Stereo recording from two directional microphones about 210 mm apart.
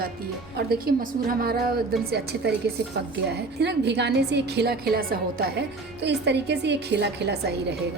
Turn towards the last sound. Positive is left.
turn(degrees=-50)  # may be behind; listen again after turning